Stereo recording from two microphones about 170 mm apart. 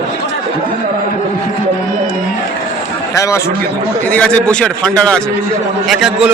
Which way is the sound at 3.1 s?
20° left (ahead or behind).